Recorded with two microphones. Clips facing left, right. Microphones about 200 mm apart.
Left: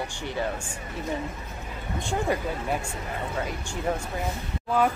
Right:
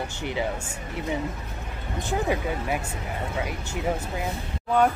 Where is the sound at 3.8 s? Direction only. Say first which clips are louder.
Even; 5° right (ahead or behind).